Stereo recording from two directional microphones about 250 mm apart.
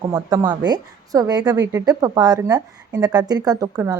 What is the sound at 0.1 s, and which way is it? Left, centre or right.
A woman's voice, centre.